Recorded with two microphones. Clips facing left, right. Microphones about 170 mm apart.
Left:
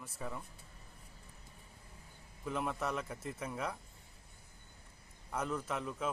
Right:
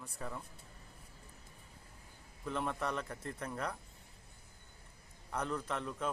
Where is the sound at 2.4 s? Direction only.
5° left (ahead or behind).